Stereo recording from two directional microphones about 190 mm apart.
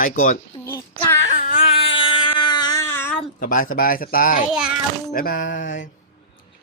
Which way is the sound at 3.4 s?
45° left (ahead or behind).